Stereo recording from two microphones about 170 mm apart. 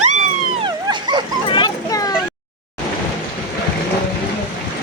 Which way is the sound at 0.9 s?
25° right (ahead or behind).